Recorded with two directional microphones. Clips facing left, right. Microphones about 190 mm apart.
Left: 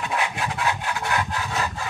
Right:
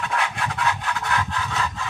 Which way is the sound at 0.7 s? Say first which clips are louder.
Even; 30° left (ahead or behind).